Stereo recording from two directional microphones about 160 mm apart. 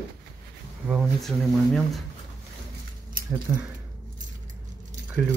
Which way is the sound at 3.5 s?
15° right (ahead or behind).